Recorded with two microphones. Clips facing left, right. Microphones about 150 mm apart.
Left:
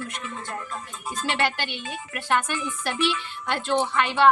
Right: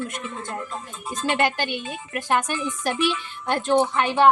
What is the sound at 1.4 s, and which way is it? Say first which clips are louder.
A woman's voice: right 3 dB; 45° right (ahead or behind).